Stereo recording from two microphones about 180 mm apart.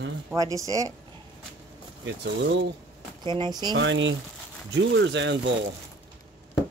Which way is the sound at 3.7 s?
90° right.